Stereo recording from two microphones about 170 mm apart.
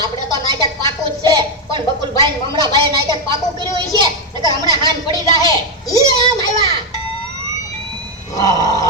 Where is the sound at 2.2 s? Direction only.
25° right (ahead or behind).